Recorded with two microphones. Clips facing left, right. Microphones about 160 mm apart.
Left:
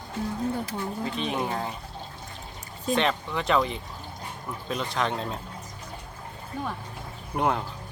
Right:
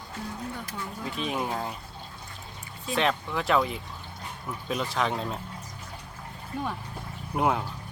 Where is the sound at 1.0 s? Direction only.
5° right (ahead or behind).